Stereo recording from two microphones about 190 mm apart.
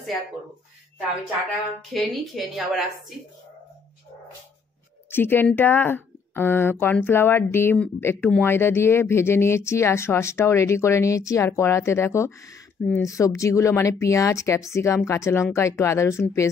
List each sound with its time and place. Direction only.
2.0 s a woman's voice: centre (ahead or behind)
5.1 s speech: 10° left (ahead or behind)